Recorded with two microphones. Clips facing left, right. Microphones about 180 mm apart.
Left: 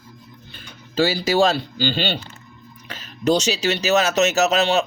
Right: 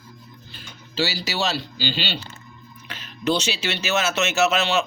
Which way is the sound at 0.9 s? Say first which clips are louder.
Left 8 dB; 50° left (ahead or behind).